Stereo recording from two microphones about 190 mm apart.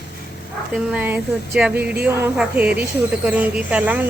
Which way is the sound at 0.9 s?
5° right (ahead or behind).